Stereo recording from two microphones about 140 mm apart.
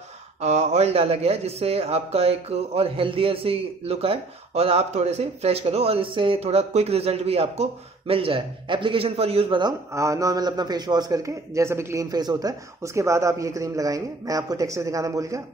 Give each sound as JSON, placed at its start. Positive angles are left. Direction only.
{"t": 0.4, "sound": "a man's voice", "side_deg": -50}